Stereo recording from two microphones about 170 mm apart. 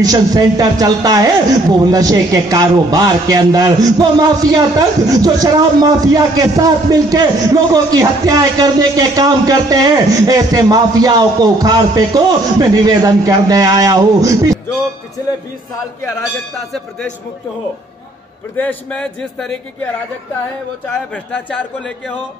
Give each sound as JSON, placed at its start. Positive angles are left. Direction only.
{"t": 0.0, "sound": "a woman's voice", "side_deg": -20}
{"t": 18.6, "sound": "speech", "side_deg": 10}
{"t": 20.8, "sound": "speech", "side_deg": 5}